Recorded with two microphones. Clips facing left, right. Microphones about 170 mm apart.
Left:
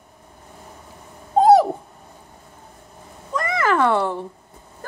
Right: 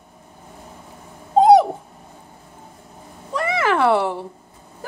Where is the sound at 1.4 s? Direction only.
5° left (ahead or behind).